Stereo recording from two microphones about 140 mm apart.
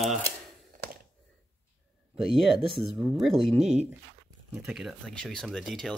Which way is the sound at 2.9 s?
5° right (ahead or behind).